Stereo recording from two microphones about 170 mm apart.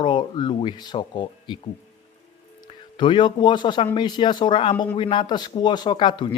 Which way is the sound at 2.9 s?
30° left (ahead or behind).